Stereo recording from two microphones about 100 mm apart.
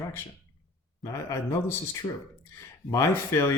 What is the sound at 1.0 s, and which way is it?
Speech, 30° left (ahead or behind).